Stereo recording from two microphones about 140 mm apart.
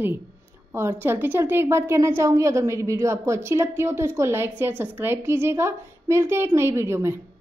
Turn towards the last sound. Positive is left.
turn(degrees=-20)  # may be behind; listen again after turning